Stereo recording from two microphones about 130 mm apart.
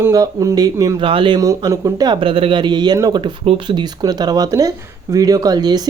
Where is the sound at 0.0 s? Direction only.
25° right (ahead or behind).